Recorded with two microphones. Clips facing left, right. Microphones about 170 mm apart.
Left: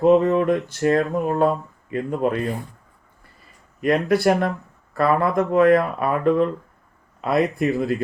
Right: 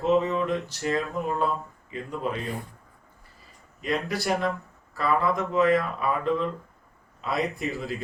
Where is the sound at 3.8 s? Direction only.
60° left (ahead or behind).